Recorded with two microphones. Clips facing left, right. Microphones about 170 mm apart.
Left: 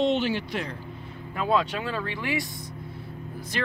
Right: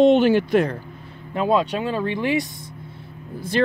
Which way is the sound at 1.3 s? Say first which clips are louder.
Right 5 dB; 20° right (ahead or behind).